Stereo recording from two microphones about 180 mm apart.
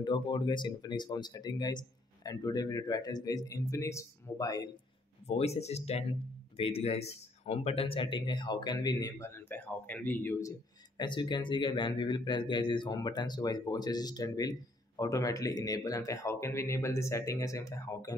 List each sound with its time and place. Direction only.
0.0 s speech: 25° left (ahead or behind)
5.2 s speech: 35° left (ahead or behind); by 10.5 s 10° left (ahead or behind)
11.0 s speech: 25° left (ahead or behind)